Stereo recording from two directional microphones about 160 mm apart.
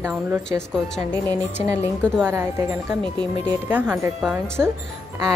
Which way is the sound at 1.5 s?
15° right (ahead or behind).